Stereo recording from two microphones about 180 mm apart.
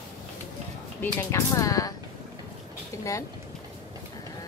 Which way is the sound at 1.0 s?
15° left (ahead or behind).